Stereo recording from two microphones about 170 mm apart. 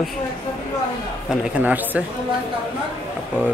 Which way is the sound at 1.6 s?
10° right (ahead or behind).